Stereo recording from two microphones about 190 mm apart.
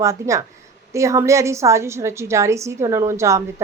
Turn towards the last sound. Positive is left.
turn(degrees=-15)  # may be behind; listen again after turning